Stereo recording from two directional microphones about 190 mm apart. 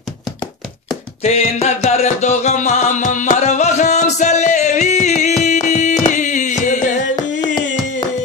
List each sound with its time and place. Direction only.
1.2 s music: 35° left (ahead or behind)